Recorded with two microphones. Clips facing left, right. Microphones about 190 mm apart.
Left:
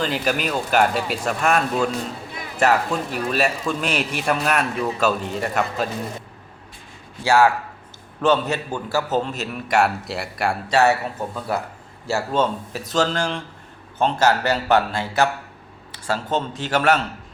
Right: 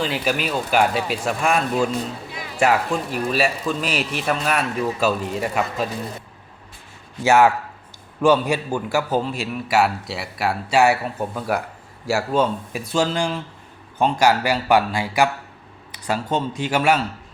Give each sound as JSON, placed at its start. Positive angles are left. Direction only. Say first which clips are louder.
{"t": 0.0, "sound": "speech", "louder": "even", "side_deg": 0}
{"t": 7.3, "sound": "a man's voice", "louder": "right 1 dB", "side_deg": -20}
{"t": 12.0, "sound": "a man's voice", "louder": "right 1 dB", "side_deg": -10}